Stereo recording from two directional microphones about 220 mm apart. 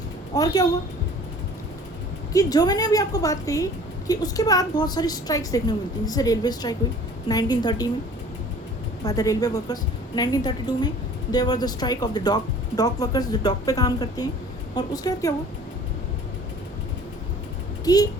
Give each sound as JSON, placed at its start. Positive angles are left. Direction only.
{"t": 0.3, "sound": "a woman's voice", "side_deg": 15}
{"t": 2.3, "sound": "a woman's voice", "side_deg": 15}
{"t": 9.0, "sound": "a woman's voice", "side_deg": 15}
{"t": 17.8, "sound": "a woman's voice", "side_deg": 15}